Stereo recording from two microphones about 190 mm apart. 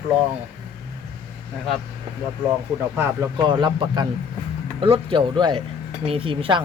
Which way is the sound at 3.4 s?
25° right (ahead or behind).